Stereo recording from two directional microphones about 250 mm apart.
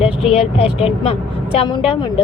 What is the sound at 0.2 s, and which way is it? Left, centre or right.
Speech, left.